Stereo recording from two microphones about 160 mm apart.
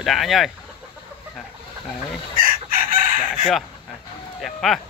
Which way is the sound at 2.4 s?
60° right (ahead or behind).